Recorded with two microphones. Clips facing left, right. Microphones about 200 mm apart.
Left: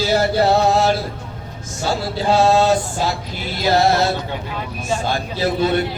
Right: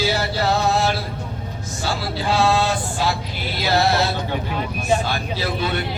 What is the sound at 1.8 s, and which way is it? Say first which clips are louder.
Speech: left 5 dB; 40° left (ahead or behind).